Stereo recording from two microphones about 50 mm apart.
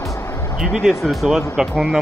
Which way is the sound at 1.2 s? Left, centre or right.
Centre.